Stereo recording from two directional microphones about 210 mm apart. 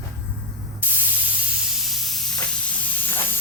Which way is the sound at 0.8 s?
10° right (ahead or behind).